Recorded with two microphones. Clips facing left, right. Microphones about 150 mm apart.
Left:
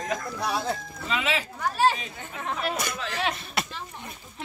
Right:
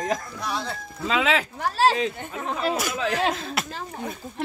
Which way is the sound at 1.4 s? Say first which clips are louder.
Right 2 dB; 90° right.